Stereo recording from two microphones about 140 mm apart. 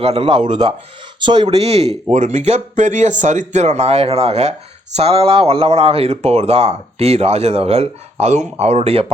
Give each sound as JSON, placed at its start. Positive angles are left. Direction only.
{"t": 0.0, "sound": "speech", "side_deg": -45}
{"t": 1.5, "sound": "speech", "side_deg": -50}